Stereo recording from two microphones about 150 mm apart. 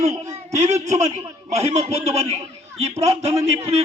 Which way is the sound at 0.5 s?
50° right (ahead or behind).